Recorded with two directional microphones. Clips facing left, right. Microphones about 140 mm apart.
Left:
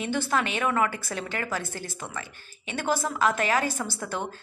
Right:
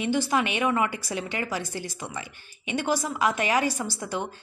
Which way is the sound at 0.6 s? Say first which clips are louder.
Right 1 dB; 15° right (ahead or behind).